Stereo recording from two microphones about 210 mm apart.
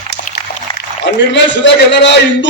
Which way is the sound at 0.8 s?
60° left (ahead or behind).